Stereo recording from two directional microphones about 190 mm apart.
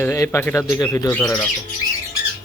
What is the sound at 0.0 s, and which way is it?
Speech, 15° left (ahead or behind).